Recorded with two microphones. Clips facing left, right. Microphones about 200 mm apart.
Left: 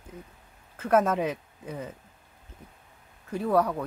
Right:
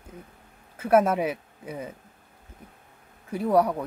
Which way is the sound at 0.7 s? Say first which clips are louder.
Right 3 dB; 10° right (ahead or behind).